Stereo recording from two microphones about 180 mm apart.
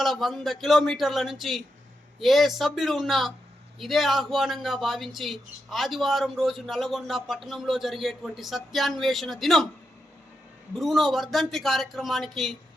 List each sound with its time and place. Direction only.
0.0 s speech: centre (ahead or behind)
10.8 s speech: centre (ahead or behind)